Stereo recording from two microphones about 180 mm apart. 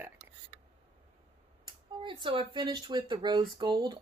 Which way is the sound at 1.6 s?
25° right (ahead or behind).